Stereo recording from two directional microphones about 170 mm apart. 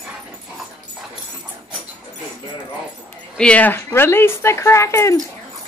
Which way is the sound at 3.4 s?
5° left (ahead or behind).